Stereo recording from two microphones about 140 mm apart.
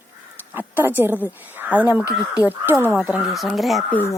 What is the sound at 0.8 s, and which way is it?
Speech, 15° right (ahead or behind).